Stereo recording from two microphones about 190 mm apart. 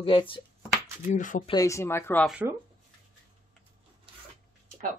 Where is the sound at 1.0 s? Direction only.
40° left (ahead or behind).